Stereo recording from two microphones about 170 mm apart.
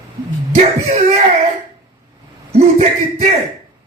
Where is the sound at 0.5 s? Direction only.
40° right (ahead or behind).